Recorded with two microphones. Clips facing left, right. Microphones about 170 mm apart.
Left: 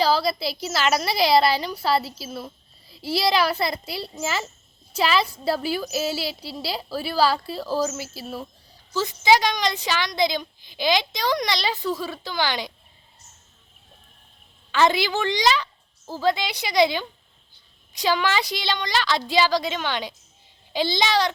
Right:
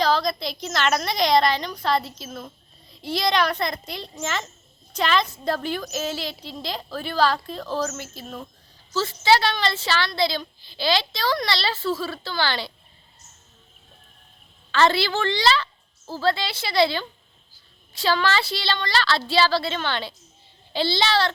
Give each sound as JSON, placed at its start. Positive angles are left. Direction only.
{"t": 0.0, "sound": "a woman's voice", "side_deg": 5}
{"t": 14.7, "sound": "a woman's voice", "side_deg": 15}